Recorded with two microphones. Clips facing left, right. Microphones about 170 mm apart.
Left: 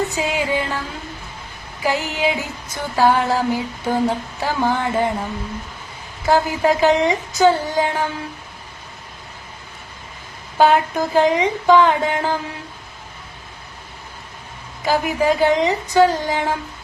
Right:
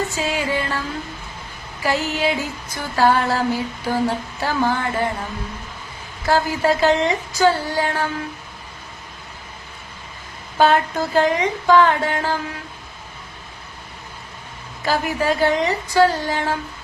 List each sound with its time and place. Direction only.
0.0 s music: 15° left (ahead or behind)
1.8 s female singing: 15° left (ahead or behind)
6.2 s female singing: 15° left (ahead or behind)
10.6 s female singing: 15° left (ahead or behind)
14.8 s female singing: 15° left (ahead or behind)